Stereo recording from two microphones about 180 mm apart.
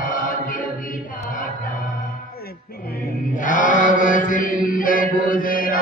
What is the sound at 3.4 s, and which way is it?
Mantra, 45° left (ahead or behind).